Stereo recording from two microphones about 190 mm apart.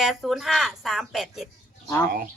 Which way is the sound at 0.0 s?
Centre (ahead or behind).